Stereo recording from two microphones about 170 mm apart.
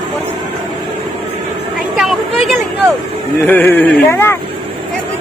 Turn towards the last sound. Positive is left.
turn(degrees=15)  # may be behind; listen again after turning